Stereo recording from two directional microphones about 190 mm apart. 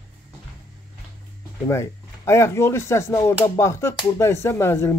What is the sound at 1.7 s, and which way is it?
Speech, 15° left (ahead or behind).